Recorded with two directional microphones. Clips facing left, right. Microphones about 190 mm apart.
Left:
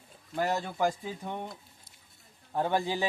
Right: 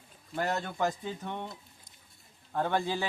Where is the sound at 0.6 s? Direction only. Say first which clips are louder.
Left 2 dB; 5° left (ahead or behind).